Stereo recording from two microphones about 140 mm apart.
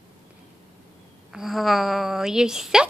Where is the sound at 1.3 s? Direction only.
Centre (ahead or behind).